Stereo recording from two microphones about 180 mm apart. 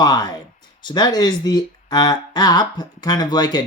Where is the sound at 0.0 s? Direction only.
20° left (ahead or behind).